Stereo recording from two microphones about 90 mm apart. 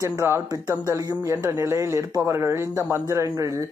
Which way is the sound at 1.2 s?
30° right (ahead or behind).